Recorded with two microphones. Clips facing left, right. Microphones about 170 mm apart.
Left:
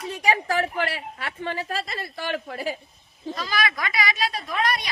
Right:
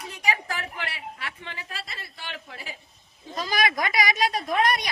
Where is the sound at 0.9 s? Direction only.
50° left (ahead or behind).